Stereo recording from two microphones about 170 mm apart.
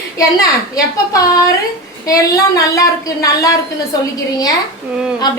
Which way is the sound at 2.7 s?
20° left (ahead or behind).